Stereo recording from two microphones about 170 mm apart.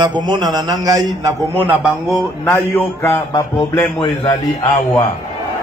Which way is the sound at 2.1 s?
15° left (ahead or behind).